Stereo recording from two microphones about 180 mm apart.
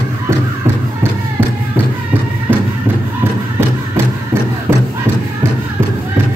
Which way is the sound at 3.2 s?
15° right (ahead or behind).